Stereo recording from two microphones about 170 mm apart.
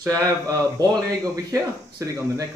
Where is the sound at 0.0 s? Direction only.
20° right (ahead or behind).